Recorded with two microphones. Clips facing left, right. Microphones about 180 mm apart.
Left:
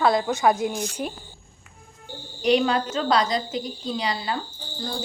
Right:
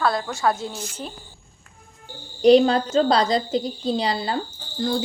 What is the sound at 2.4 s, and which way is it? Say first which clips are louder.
A woman's voice: right 6 dB; 35° right (ahead or behind).